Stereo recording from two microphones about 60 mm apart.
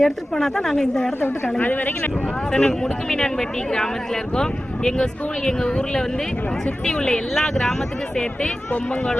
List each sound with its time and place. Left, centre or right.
0.0 s speech: centre
1.2 s a woman's voice: left
2.5 s speech: centre